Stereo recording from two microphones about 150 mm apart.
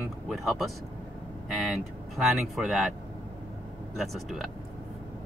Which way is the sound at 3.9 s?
Centre (ahead or behind).